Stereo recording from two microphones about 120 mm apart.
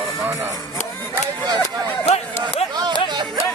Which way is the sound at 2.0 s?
60° left (ahead or behind).